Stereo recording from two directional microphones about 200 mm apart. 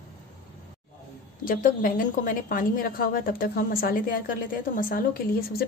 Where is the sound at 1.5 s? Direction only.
45° left (ahead or behind).